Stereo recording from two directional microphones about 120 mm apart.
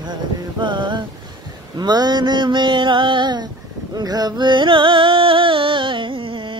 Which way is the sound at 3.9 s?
35° right (ahead or behind).